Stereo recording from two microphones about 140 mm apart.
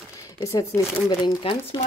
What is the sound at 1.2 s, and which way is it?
Speech, 35° left (ahead or behind).